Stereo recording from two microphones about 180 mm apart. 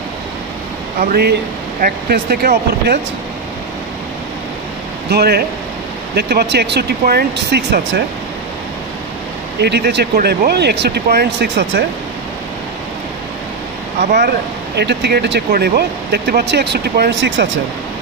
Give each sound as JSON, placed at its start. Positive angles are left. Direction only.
{"t": 1.0, "sound": "speech", "side_deg": -60}
{"t": 5.1, "sound": "speech", "side_deg": -60}
{"t": 9.6, "sound": "speech", "side_deg": -65}
{"t": 14.8, "sound": "speech", "side_deg": -65}